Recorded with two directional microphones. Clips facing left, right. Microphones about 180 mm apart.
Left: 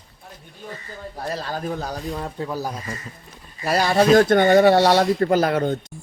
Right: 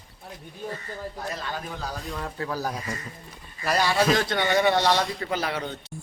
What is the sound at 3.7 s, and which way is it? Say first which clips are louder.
Speech: left 7 dB; 45° left (ahead or behind).